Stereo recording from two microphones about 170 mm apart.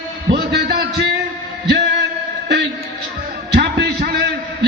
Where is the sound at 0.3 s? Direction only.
70° right (ahead or behind).